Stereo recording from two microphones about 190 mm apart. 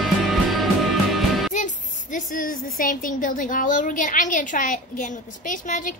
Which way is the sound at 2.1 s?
45° left (ahead or behind).